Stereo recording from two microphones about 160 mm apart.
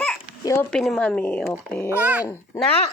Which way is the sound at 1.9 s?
10° right (ahead or behind).